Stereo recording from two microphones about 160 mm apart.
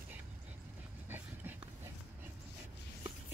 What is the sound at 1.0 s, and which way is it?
Dog, 10° right (ahead or behind).